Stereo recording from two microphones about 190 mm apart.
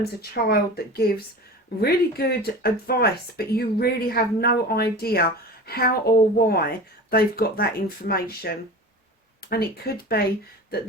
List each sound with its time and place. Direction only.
0.2 s a woman's voice: 55° left (ahead or behind)